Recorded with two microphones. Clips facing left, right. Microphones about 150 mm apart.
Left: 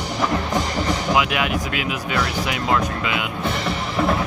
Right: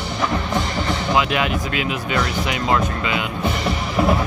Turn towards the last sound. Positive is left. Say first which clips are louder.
# right 2 dB
turn(degrees=0)  # may be behind; listen again after turning